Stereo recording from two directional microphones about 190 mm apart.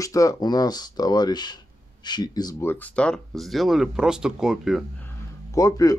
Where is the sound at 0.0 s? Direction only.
15° left (ahead or behind); by 4.8 s centre (ahead or behind).